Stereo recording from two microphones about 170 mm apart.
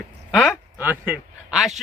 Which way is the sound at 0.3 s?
5° left (ahead or behind).